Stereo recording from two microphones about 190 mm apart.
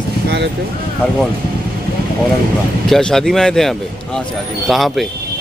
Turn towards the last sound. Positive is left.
turn(degrees=0)  # may be behind; listen again after turning